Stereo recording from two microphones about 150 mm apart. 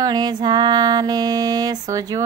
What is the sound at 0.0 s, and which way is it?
Music, 30° right (ahead or behind).